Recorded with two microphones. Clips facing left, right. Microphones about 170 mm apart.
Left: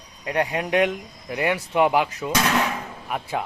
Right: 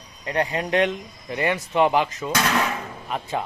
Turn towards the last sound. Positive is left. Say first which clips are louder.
# even
turn(degrees=10)  # may be behind; listen again after turning